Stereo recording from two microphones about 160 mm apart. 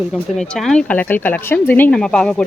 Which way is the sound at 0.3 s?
5° left (ahead or behind).